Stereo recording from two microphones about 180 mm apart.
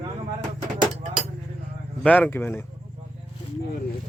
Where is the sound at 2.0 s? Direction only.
10° left (ahead or behind).